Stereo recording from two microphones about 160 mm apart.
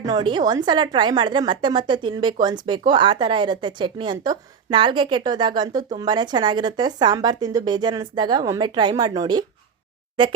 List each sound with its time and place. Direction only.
0.0 s a woman's voice: 25° right (ahead or behind)